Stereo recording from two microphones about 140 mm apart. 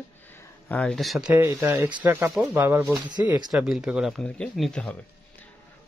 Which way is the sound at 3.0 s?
30° right (ahead or behind).